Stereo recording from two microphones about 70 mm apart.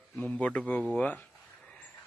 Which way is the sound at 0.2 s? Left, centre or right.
Centre.